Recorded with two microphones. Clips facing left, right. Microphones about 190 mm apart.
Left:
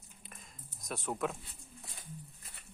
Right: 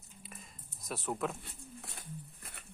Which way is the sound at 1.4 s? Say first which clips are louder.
Right 5 dB; 65° right (ahead or behind).